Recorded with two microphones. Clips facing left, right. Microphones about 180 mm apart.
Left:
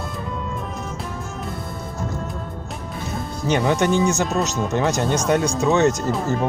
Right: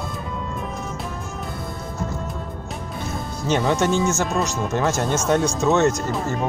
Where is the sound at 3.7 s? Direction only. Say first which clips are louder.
Left 2 dB; 15° left (ahead or behind).